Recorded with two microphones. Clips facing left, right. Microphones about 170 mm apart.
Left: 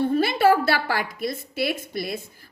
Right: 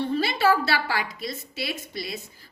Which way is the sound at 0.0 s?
50° left (ahead or behind).